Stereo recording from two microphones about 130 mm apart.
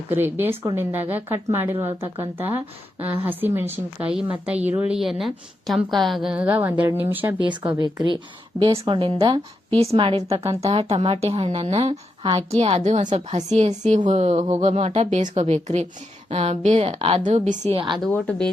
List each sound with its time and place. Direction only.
0.1 s a woman's voice: 15° right (ahead or behind)
7.4 s speech: 35° right (ahead or behind)
9.7 s a woman's voice: 50° right (ahead or behind)
17.2 s a woman's voice: 60° right (ahead or behind)
18.1 s speech: 10° left (ahead or behind)